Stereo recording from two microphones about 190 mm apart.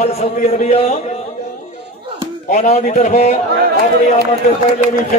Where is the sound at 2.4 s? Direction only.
40° left (ahead or behind).